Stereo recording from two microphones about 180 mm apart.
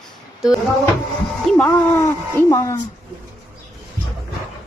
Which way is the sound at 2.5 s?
15° left (ahead or behind).